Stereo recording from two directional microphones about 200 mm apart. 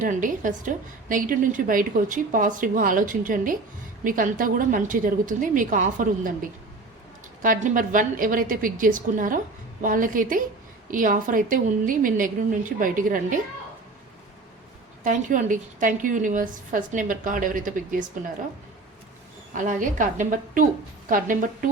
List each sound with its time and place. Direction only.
0.0 s a woman's voice: 40° right (ahead or behind)
15.0 s a woman's voice: 40° right (ahead or behind)
19.5 s a woman's voice: 40° right (ahead or behind)